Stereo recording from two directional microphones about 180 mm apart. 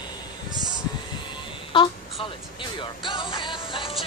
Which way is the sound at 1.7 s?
30° left (ahead or behind).